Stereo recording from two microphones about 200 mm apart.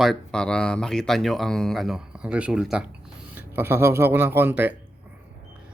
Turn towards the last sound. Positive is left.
turn(degrees=-10)  # may be behind; listen again after turning